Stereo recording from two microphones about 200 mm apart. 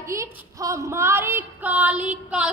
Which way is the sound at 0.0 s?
15° right (ahead or behind).